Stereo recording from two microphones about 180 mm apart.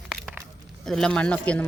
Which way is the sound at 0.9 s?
5° left (ahead or behind).